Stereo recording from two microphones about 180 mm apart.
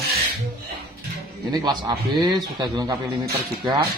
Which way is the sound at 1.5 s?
25° right (ahead or behind).